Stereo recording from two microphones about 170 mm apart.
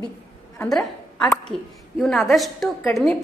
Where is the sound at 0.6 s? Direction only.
Centre (ahead or behind).